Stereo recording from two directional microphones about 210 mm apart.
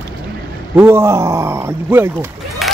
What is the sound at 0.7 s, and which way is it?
Speech, 10° right (ahead or behind).